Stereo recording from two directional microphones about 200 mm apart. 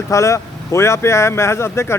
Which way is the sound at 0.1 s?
15° left (ahead or behind).